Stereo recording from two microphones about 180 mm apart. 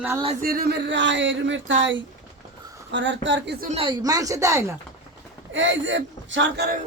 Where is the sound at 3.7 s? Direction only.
30° right (ahead or behind).